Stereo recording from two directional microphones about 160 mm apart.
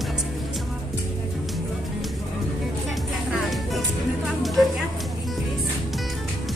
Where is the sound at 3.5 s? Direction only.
Centre (ahead or behind).